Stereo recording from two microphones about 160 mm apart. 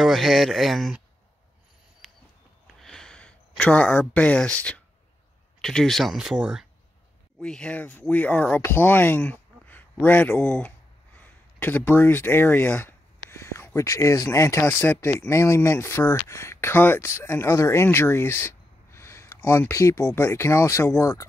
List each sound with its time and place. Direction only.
0.0 s speech: centre (ahead or behind)
2.6 s a sound: centre (ahead or behind)
5.6 s speech: 5° left (ahead or behind); by 21.3 s 20° left (ahead or behind)